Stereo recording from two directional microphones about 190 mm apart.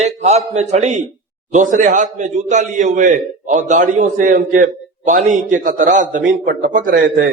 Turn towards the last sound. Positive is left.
turn(degrees=-50)  # may be behind; listen again after turning